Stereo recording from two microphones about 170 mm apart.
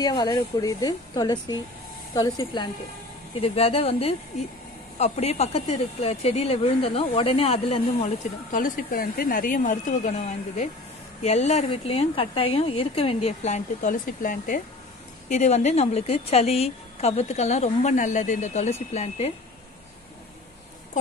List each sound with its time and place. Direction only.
0.0 s a woman's voice: 25° left (ahead or behind)
8.5 s a woman's voice: 55° left (ahead or behind)
15.2 s a woman's voice: 45° left (ahead or behind)